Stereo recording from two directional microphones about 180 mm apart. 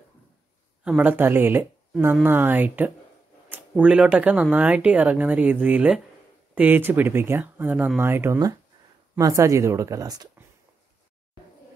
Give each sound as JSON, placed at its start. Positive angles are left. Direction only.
{"t": 0.8, "sound": "speech", "side_deg": -5}